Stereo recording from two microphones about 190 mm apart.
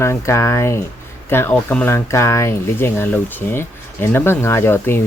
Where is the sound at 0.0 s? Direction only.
15° left (ahead or behind).